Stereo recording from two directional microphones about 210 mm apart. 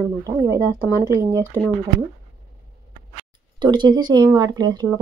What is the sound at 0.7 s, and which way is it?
Speech, 15° left (ahead or behind).